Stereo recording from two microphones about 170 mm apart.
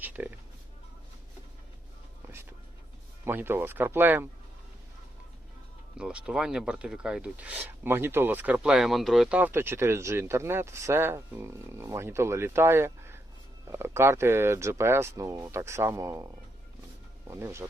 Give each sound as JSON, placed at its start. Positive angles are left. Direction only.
{"t": 0.0, "sound": "a sound", "side_deg": -10}
{"t": 3.2, "sound": "speech", "side_deg": -15}
{"t": 6.0, "sound": "speech", "side_deg": -5}
{"t": 17.2, "sound": "speech", "side_deg": -15}